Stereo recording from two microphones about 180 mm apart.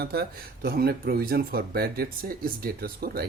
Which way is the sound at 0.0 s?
60° right (ahead or behind).